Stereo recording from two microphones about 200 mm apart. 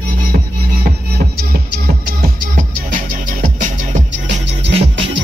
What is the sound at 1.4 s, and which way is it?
Music, 50° right (ahead or behind).